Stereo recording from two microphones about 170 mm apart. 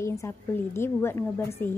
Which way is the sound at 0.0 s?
15° left (ahead or behind).